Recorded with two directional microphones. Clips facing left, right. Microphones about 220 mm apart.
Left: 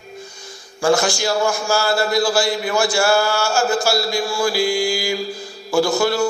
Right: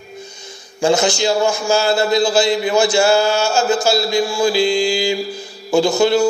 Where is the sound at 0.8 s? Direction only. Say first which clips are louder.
Right 2 dB; 20° right (ahead or behind).